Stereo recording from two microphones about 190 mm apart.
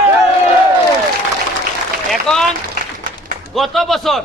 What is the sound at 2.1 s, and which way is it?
Speech, centre (ahead or behind).